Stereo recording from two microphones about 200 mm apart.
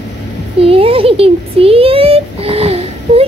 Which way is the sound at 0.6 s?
30° right (ahead or behind).